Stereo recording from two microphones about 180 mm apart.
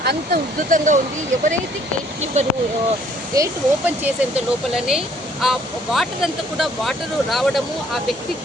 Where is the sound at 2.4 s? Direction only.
40° right (ahead or behind).